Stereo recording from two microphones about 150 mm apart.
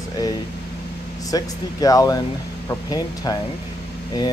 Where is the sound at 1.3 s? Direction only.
25° left (ahead or behind).